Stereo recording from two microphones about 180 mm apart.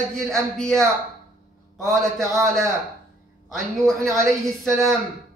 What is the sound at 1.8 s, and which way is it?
A man's voice, centre (ahead or behind).